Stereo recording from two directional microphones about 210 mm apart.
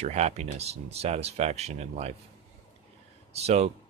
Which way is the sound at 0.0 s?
30° right (ahead or behind).